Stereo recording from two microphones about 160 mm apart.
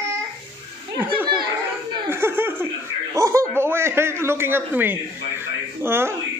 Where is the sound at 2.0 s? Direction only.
15° right (ahead or behind).